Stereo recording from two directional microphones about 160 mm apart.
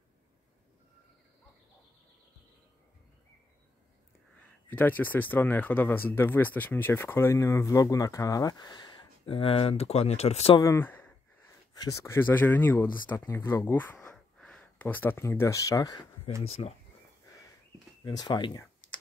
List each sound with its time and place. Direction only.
4.4 s speech: 10° left (ahead or behind); by 10.6 s 40° left (ahead or behind)
10.6 s sigh: 15° left (ahead or behind)
11.7 s speech: 20° left (ahead or behind)
16.6 s speech: 40° left (ahead or behind)
18.0 s speech: 25° left (ahead or behind)